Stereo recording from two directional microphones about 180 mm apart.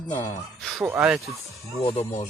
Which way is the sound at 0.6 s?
Centre (ahead or behind).